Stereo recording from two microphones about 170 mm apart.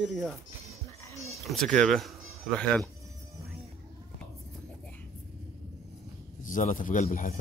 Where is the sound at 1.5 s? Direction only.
5° left (ahead or behind).